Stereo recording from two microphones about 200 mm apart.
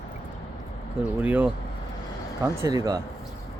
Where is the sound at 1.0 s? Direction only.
10° right (ahead or behind).